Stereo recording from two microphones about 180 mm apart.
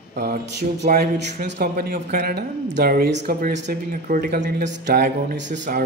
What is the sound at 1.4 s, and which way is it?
Speech, 65° right (ahead or behind).